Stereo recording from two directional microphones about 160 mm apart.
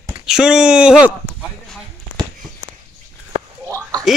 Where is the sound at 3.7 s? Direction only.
20° right (ahead or behind).